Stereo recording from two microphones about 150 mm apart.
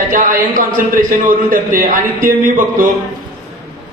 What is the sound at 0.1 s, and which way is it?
A man's voice, 65° right (ahead or behind).